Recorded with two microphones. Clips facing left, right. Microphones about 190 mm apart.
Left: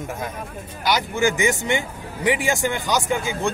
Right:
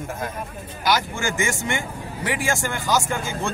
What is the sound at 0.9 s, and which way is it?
A man's voice, 20° left (ahead or behind).